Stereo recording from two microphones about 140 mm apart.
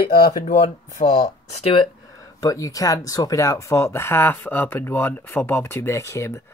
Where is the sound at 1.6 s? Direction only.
35° left (ahead or behind).